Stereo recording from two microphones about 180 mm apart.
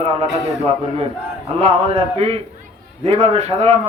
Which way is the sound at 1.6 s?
35° right (ahead or behind).